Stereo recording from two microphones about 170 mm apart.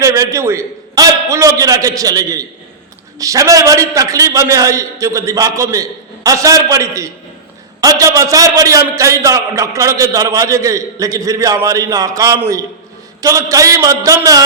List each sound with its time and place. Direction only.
0.0 s a man's voice: 20° right (ahead or behind)